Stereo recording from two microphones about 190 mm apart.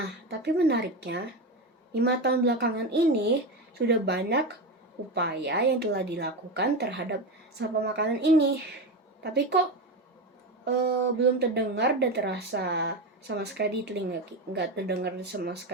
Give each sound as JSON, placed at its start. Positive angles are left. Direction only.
{"t": 0.3, "sound": "speech", "side_deg": -60}
{"t": 10.8, "sound": "speech", "side_deg": -60}